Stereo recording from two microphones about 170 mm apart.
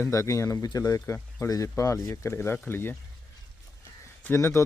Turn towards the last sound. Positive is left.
turn(degrees=15)  # may be behind; listen again after turning